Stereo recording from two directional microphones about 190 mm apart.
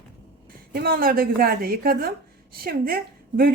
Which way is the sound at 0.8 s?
50° right (ahead or behind).